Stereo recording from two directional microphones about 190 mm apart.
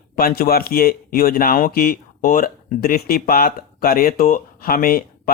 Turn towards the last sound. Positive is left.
turn(degrees=50)  # may be behind; listen again after turning